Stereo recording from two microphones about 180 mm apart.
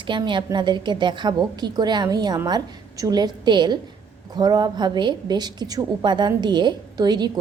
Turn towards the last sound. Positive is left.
turn(degrees=-25)  # may be behind; listen again after turning